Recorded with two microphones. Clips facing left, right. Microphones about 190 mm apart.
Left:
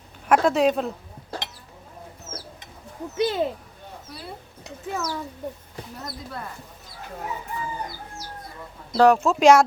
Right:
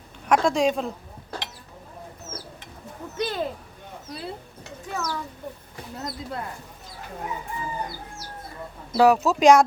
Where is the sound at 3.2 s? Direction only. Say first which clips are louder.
Left 4 dB; 20° left (ahead or behind).